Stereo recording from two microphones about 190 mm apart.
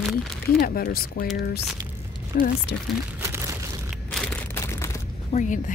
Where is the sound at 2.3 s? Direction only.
50° left (ahead or behind).